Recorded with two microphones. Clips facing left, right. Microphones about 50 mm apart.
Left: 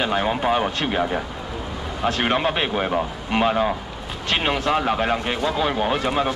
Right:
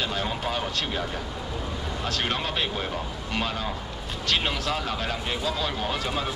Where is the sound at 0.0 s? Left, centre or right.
Left.